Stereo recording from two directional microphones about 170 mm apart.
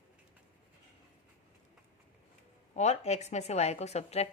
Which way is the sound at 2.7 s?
40° left (ahead or behind).